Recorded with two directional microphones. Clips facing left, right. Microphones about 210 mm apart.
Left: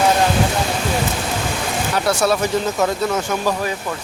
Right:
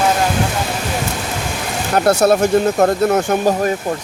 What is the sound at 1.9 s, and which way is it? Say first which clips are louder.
Speech: right 6 dB; 55° right (ahead or behind).